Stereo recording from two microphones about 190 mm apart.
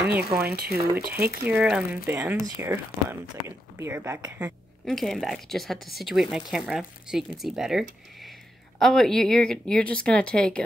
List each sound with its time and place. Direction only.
0.6 s speech: 55° right (ahead or behind)
1.0 s speech: 10° right (ahead or behind)
4.8 s speech: centre (ahead or behind)